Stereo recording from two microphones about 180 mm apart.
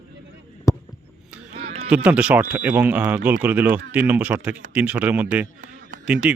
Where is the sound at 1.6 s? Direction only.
35° right (ahead or behind).